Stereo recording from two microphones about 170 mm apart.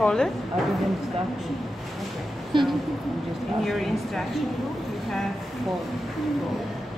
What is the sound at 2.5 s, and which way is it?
Speech, 30° right (ahead or behind).